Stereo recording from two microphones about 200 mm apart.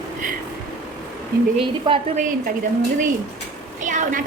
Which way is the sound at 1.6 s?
25° right (ahead or behind).